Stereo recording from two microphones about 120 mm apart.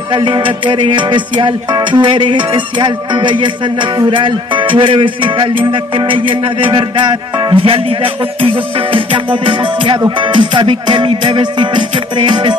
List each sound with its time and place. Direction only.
0.1 s music: 45° right (ahead or behind)